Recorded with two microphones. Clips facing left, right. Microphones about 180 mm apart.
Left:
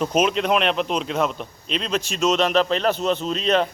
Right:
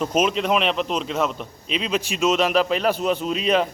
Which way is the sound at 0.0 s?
Centre (ahead or behind).